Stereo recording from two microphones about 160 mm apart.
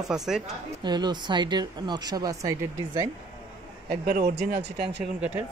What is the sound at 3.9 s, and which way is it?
Speech, 75° right (ahead or behind).